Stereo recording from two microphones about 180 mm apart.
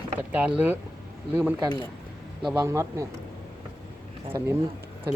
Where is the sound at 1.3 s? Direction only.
10° right (ahead or behind).